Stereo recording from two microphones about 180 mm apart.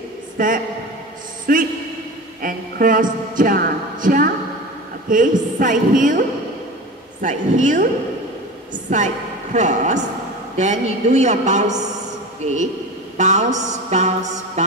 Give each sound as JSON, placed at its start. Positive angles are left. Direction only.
{"t": 0.4, "sound": "speech", "side_deg": -50}
{"t": 1.5, "sound": "a sound", "side_deg": -50}
{"t": 5.1, "sound": "speech", "side_deg": -45}
{"t": 8.9, "sound": "a woman's voice", "side_deg": -45}
{"t": 10.5, "sound": "music", "side_deg": -40}
{"t": 13.2, "sound": "music", "side_deg": -40}